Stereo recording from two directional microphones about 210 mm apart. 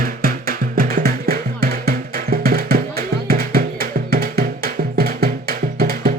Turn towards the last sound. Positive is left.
turn(degrees=-45)  # may be behind; listen again after turning